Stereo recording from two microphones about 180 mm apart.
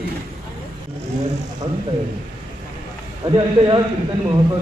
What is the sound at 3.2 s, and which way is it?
Speech, 20° right (ahead or behind).